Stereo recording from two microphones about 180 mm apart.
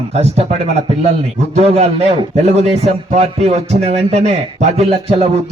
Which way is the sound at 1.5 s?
35° right (ahead or behind).